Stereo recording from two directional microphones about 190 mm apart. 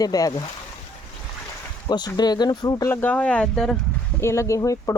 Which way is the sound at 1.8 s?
20° left (ahead or behind).